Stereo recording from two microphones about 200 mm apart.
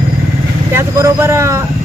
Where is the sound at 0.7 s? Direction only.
15° right (ahead or behind).